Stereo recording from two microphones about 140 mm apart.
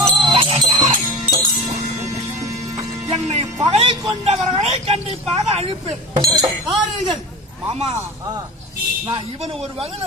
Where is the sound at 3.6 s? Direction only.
40° right (ahead or behind).